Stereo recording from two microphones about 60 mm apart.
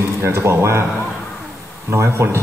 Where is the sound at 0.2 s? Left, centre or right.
Right.